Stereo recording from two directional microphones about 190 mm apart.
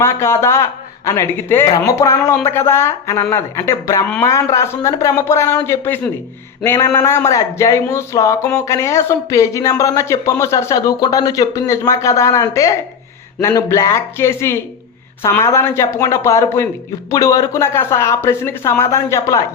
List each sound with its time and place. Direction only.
0.0 s speech: 15° left (ahead or behind)